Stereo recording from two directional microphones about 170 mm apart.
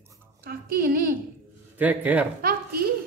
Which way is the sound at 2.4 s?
60° right (ahead or behind).